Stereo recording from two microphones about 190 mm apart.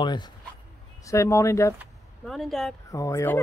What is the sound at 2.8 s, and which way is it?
Speech, 15° left (ahead or behind).